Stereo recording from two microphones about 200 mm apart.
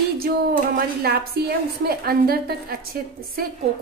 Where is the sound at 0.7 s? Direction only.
50° right (ahead or behind).